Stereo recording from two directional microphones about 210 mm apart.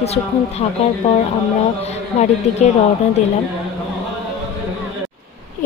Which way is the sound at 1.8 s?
30° left (ahead or behind).